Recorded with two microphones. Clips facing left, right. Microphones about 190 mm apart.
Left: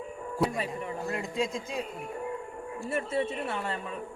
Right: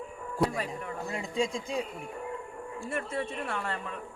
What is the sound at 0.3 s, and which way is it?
A man's voice, centre (ahead or behind).